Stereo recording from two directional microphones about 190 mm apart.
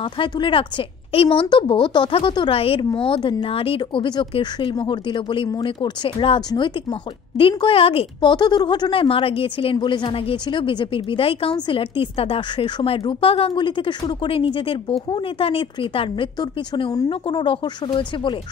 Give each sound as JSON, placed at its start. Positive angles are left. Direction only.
{"t": 0.0, "sound": "a woman's voice", "side_deg": 30}